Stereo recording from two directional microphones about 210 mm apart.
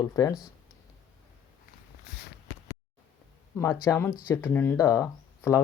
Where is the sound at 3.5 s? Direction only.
15° left (ahead or behind).